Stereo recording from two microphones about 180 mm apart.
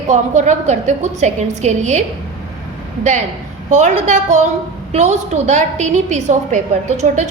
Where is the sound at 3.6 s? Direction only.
40° right (ahead or behind).